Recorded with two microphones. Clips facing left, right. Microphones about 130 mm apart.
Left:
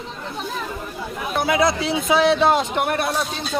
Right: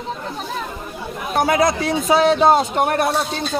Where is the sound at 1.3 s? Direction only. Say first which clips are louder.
Right 3 dB; 45° right (ahead or behind).